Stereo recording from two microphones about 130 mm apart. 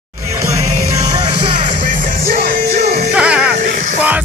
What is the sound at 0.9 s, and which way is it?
Music, 30° right (ahead or behind).